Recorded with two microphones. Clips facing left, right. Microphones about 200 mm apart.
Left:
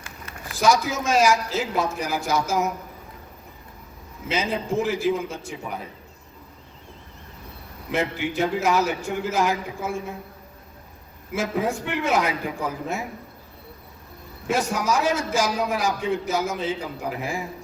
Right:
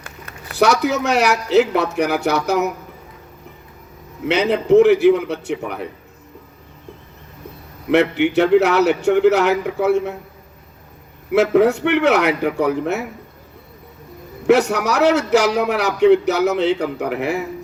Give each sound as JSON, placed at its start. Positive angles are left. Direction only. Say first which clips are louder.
{"t": 0.0, "sound": "speech", "louder": "right 2 dB", "side_deg": -65}
{"t": 4.3, "sound": "a man's voice", "louder": "right 11 dB", "side_deg": -70}
{"t": 7.9, "sound": "a man's voice", "louder": "right 10 dB", "side_deg": -70}
{"t": 11.3, "sound": "a man's voice", "louder": "right 11 dB", "side_deg": -70}
{"t": 14.4, "sound": "a man's voice", "louder": "right 9 dB", "side_deg": -70}